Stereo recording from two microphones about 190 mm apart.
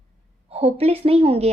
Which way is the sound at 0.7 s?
30° right (ahead or behind).